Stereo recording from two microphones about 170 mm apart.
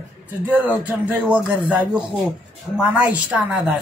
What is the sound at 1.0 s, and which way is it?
Speech, 10° right (ahead or behind).